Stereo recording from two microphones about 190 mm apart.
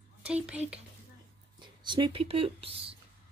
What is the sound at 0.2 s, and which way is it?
Speech, 5° right (ahead or behind).